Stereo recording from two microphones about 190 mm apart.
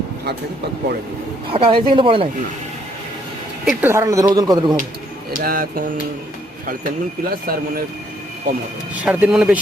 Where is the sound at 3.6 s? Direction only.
15° right (ahead or behind).